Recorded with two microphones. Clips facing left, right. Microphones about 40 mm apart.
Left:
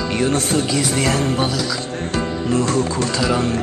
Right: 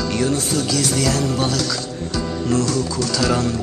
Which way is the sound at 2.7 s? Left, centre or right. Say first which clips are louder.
Left 2 dB; left.